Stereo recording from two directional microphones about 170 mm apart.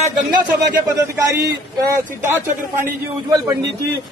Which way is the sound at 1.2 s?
20° right (ahead or behind).